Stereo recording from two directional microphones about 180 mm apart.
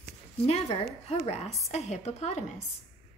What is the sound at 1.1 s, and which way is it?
Speech, 35° left (ahead or behind).